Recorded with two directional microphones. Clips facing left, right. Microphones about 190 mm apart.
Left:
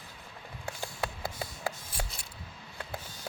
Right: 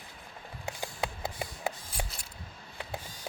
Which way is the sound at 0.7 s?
15° right (ahead or behind).